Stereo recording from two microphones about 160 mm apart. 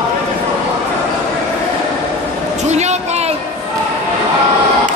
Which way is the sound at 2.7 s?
45° right (ahead or behind).